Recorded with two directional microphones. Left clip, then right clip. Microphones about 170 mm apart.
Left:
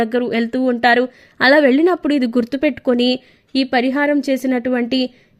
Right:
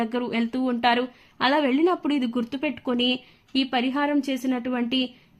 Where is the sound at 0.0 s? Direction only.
25° left (ahead or behind).